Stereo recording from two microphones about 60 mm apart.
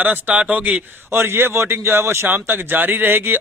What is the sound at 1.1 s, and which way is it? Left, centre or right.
A man's voice, right.